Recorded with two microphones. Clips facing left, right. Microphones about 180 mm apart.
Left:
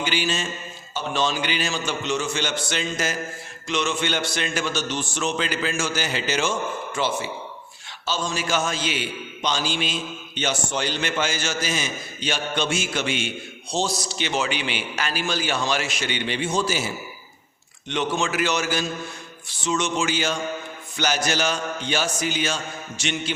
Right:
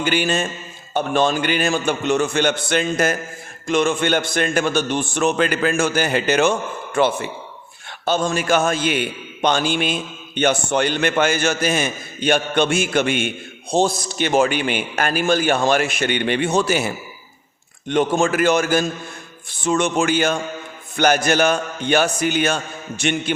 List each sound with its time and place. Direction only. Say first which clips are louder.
0.0 s a man's voice: right 6 dB; 55° right (ahead or behind)
17.8 s a man's voice: right 7 dB; 50° right (ahead or behind)